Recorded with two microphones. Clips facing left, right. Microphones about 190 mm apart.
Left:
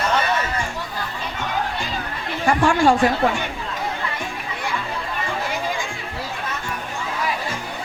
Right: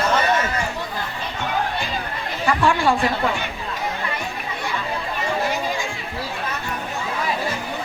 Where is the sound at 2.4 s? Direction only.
45° left (ahead or behind).